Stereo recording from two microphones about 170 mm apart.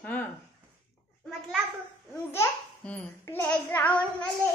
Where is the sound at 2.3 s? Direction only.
10° left (ahead or behind).